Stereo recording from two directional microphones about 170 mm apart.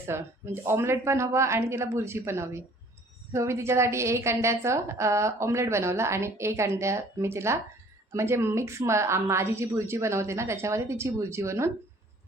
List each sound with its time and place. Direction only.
0.0 s a woman's voice: 15° right (ahead or behind)